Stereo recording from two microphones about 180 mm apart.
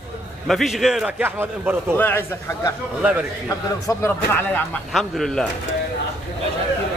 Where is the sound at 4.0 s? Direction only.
10° left (ahead or behind).